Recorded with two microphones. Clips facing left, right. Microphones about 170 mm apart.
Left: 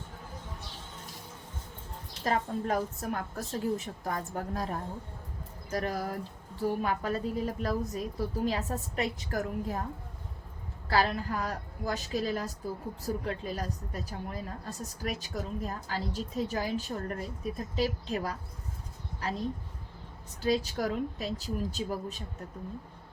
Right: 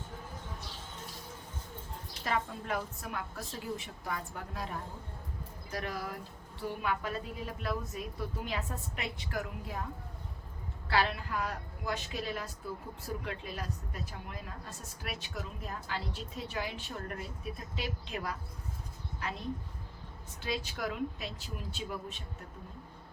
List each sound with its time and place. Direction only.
2.2 s a woman's voice: 40° left (ahead or behind)
10.8 s a woman's voice: 40° left (ahead or behind)